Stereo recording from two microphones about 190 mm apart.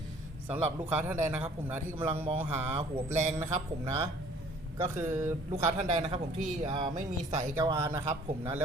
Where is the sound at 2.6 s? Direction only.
35° right (ahead or behind).